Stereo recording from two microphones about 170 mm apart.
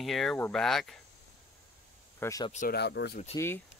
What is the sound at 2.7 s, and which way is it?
Speech, 85° left.